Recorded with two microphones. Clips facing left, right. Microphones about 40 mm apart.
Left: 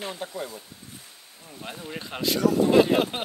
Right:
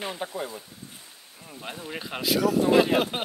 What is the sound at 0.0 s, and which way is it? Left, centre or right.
Speech, centre.